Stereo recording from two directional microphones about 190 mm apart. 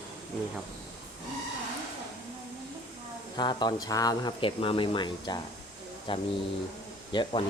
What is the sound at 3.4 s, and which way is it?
Speech, 20° left (ahead or behind).